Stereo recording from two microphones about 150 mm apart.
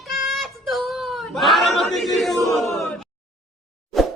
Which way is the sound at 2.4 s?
Centre (ahead or behind).